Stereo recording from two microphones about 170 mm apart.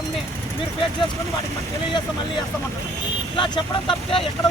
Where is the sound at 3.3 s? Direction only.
30° left (ahead or behind).